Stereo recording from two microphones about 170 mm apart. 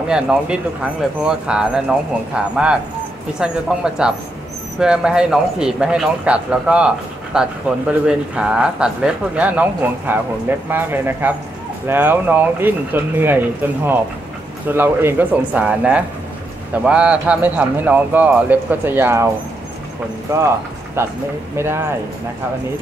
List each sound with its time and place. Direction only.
0.1 s speech: 5° right (ahead or behind)
20.3 s speech: 15° right (ahead or behind)